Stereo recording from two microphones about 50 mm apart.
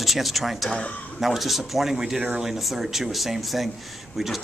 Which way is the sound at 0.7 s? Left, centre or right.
Left.